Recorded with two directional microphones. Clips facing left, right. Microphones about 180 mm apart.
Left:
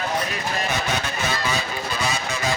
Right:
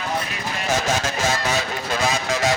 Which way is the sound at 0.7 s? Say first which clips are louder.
Right 4 dB; 90° right.